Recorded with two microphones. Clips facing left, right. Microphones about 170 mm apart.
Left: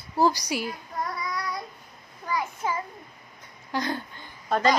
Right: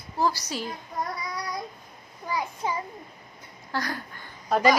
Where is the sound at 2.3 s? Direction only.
15° right (ahead or behind).